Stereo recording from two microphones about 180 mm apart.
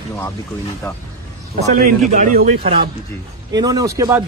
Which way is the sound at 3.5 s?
20° right (ahead or behind).